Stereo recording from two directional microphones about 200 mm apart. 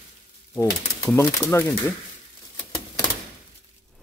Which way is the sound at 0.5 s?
15° left (ahead or behind).